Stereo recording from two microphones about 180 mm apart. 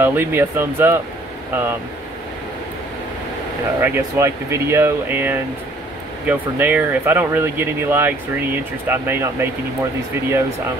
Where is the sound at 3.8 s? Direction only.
15° right (ahead or behind).